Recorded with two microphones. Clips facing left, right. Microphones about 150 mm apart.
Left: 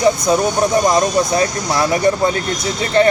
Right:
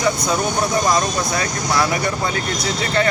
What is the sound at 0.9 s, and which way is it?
Speech, 25° left (ahead or behind).